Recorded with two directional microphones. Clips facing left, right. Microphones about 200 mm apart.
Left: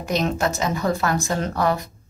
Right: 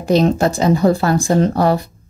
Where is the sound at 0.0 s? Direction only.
30° right (ahead or behind).